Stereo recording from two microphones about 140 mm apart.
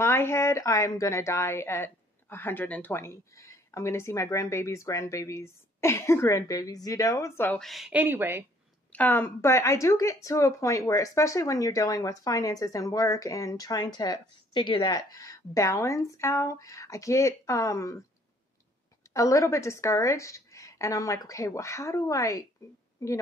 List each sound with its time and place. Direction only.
0.0 s a woman's voice: 20° left (ahead or behind)
7.6 s speech: centre (ahead or behind)
7.9 s speech: 15° right (ahead or behind)
8.9 s a woman's voice: 15° left (ahead or behind)
19.1 s a woman's voice: 20° left (ahead or behind)